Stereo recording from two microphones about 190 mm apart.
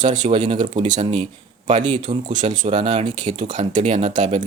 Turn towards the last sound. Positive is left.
turn(degrees=-40)  # may be behind; listen again after turning